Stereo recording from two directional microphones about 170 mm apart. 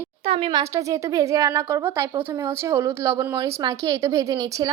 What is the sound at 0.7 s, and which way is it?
A woman's voice, 20° right (ahead or behind).